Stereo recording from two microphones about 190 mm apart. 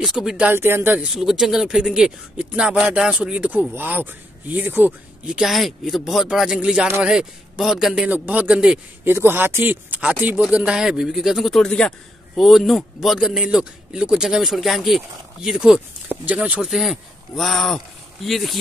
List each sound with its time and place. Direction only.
0.0 s speech: centre (ahead or behind)